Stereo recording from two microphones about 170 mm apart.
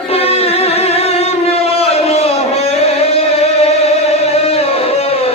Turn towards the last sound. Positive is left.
turn(degrees=35)  # may be behind; listen again after turning